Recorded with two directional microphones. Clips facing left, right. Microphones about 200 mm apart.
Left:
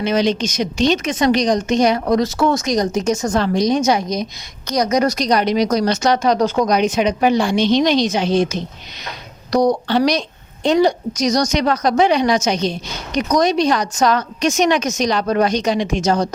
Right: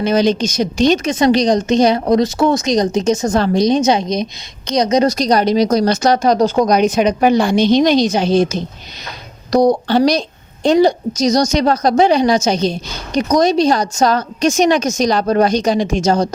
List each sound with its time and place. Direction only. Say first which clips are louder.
0.0 s a woman's voice: right 3 dB; 35° right (ahead or behind)
2.2 s speech: right 3 dB; 15° right (ahead or behind)
3.3 s a woman's voice: right 2 dB; 30° right (ahead or behind)